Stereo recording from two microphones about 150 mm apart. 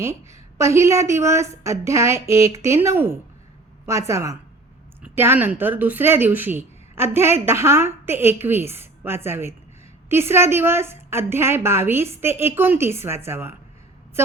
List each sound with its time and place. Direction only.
0.6 s a woman's voice: 20° right (ahead or behind)